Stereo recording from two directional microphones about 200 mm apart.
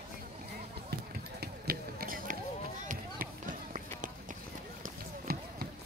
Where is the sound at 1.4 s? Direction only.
50° right (ahead or behind).